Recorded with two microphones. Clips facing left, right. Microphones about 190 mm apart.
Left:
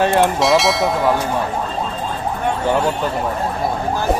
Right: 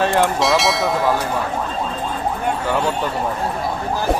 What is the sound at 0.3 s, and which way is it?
Speech, centre (ahead or behind).